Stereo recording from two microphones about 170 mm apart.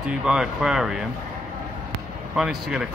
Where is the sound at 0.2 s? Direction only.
5° right (ahead or behind).